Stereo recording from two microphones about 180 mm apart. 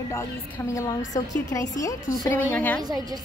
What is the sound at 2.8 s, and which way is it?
Speech, 20° right (ahead or behind).